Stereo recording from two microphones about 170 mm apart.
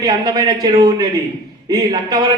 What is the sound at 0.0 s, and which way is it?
A man's voice, 25° right (ahead or behind).